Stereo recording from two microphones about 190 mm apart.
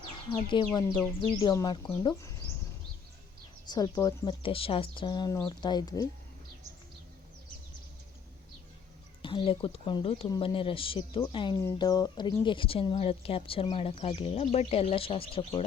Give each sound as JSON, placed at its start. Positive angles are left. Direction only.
{"t": 0.1, "sound": "speech", "side_deg": 25}
{"t": 3.7, "sound": "speech", "side_deg": 20}
{"t": 4.4, "sound": "speech", "side_deg": 30}
{"t": 9.2, "sound": "speech", "side_deg": 25}